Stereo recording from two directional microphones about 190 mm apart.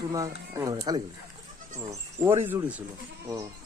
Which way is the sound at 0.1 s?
15° right (ahead or behind).